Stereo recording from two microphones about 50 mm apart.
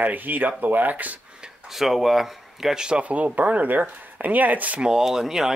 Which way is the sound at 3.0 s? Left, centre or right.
Right.